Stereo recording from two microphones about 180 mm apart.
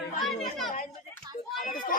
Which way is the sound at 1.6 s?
50° left (ahead or behind).